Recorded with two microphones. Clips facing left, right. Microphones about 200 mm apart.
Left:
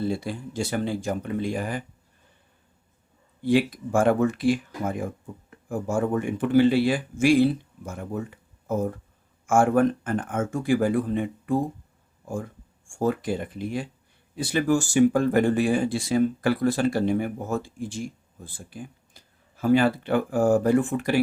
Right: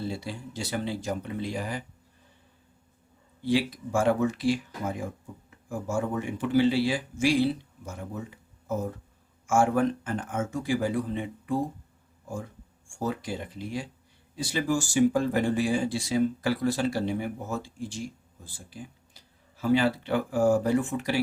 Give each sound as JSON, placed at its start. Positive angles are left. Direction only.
{"t": 0.0, "sound": "speech", "side_deg": 50}
{"t": 3.4, "sound": "speech", "side_deg": 55}
{"t": 13.0, "sound": "speech", "side_deg": 55}